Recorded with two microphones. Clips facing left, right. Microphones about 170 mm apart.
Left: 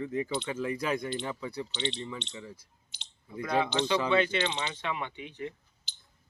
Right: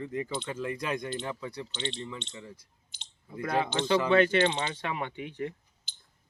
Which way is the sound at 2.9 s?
50° right (ahead or behind).